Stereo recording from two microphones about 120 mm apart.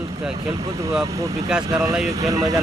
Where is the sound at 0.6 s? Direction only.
25° right (ahead or behind).